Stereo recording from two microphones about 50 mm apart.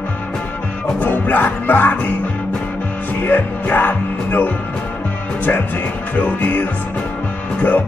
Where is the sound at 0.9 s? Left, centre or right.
Left.